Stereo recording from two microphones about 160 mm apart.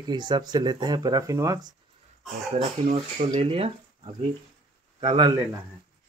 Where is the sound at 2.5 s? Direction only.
45° right (ahead or behind).